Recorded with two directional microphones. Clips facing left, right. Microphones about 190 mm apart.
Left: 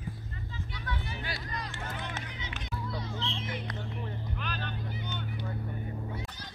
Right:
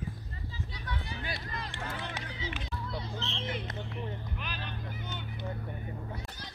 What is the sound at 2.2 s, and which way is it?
Music, 30° right (ahead or behind).